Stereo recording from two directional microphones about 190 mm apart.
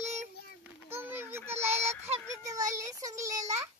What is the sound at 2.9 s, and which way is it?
Speech, 15° right (ahead or behind).